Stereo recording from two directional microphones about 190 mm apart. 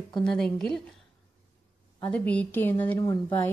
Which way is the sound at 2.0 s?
5° left (ahead or behind).